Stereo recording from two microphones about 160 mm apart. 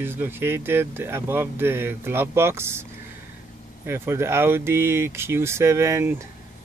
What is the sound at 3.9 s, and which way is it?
Speech, 15° right (ahead or behind).